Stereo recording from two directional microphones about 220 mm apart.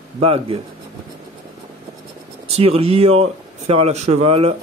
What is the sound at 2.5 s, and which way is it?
Speech, 25° right (ahead or behind).